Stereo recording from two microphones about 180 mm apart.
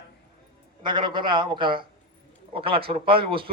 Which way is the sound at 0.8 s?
25° right (ahead or behind).